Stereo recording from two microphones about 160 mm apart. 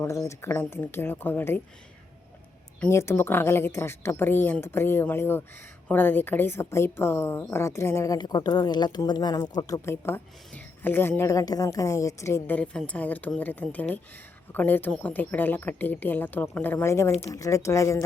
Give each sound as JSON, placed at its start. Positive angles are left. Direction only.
{"t": 0.0, "sound": "speech", "side_deg": 15}
{"t": 2.8, "sound": "speech", "side_deg": 15}